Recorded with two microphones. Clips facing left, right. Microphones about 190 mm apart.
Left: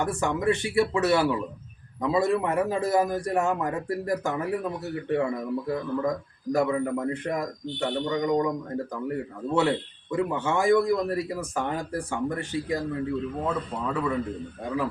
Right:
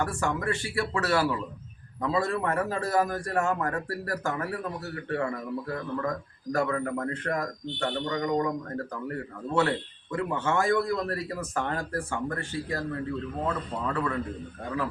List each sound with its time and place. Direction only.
0.0 s a man's voice: 20° left (ahead or behind)